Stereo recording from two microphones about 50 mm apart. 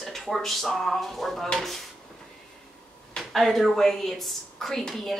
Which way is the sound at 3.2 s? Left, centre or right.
Centre.